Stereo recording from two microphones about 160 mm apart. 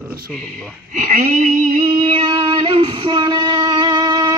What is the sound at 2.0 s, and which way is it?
Female singing, 35° right (ahead or behind).